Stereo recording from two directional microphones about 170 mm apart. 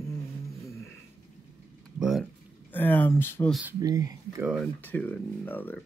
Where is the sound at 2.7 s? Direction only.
10° left (ahead or behind).